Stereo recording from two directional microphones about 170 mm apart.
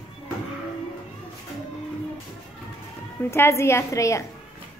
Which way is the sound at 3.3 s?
15° left (ahead or behind).